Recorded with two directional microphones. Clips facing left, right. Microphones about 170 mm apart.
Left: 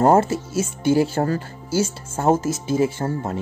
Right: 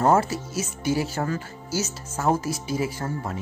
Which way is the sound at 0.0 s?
30° left (ahead or behind).